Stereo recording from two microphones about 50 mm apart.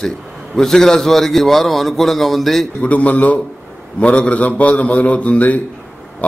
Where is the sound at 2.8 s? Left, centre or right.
Left.